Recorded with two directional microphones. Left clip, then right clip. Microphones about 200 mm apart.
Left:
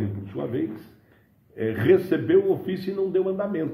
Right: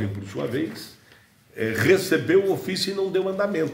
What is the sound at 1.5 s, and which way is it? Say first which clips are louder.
A man's voice: even; 10° right (ahead or behind).